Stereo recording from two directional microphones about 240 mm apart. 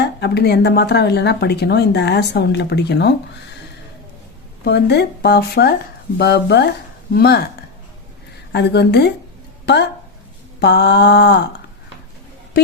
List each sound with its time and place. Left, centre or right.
0.0 s speech: left
4.6 s speech: left
8.5 s speech: left